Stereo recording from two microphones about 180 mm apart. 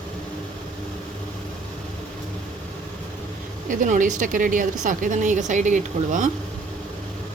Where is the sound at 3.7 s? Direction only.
45° right (ahead or behind).